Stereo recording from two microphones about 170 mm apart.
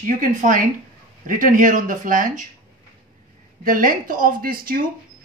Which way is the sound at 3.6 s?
50° right (ahead or behind).